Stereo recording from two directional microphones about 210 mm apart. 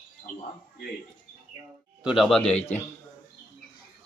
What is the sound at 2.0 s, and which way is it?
Mantra, centre (ahead or behind).